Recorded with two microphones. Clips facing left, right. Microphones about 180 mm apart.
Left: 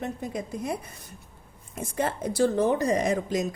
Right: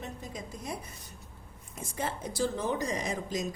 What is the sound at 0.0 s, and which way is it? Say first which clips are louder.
A woman's voice: left 9 dB; 60° left (ahead or behind).